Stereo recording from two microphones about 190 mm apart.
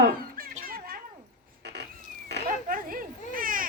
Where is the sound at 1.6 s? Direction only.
60° right (ahead or behind).